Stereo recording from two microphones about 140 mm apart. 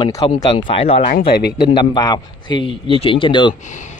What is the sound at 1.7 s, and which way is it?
A man's voice, 30° left (ahead or behind).